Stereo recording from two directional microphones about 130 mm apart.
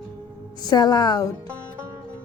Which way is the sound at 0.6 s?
30° left (ahead or behind).